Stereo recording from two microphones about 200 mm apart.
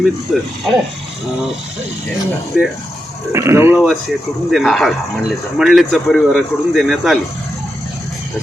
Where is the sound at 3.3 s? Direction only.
15° right (ahead or behind).